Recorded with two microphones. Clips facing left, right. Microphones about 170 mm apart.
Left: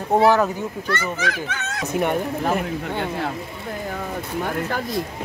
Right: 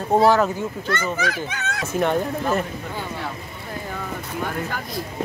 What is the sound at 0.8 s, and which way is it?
Speech, 20° right (ahead or behind).